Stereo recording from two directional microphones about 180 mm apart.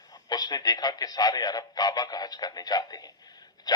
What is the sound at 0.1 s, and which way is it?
A man's voice, 20° left (ahead or behind).